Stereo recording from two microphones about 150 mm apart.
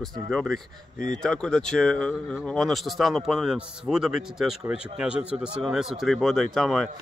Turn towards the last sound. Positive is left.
turn(degrees=0)  # may be behind; listen again after turning